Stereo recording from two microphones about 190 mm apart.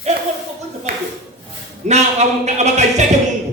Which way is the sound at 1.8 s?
35° right (ahead or behind).